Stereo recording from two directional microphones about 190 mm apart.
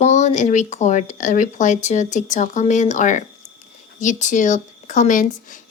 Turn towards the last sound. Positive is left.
turn(degrees=45)  # may be behind; listen again after turning